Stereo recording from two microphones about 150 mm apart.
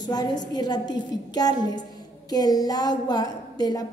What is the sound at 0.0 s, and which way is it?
A woman's voice, 25° left (ahead or behind).